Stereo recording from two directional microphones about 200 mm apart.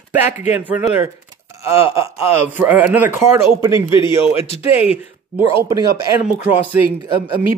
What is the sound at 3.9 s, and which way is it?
Speech, 25° left (ahead or behind).